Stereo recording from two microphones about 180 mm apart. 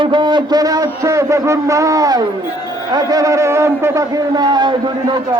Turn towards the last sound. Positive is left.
turn(degrees=-25)  # may be behind; listen again after turning